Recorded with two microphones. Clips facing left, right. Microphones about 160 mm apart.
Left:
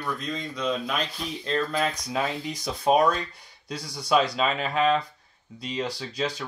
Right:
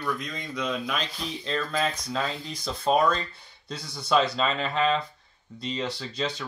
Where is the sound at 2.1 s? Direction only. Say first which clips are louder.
Left 2 dB; 15° left (ahead or behind).